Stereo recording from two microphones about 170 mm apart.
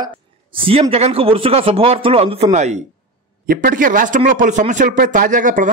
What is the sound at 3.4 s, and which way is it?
Speech, 55° right (ahead or behind).